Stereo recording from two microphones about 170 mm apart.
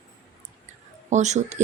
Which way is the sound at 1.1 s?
45° right (ahead or behind).